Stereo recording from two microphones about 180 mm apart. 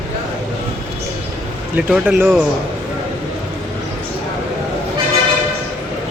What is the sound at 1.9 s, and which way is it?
Speech, 10° right (ahead or behind).